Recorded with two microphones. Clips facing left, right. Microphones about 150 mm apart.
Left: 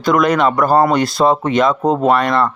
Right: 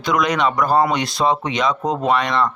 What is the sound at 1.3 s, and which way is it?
Speech, 50° left (ahead or behind).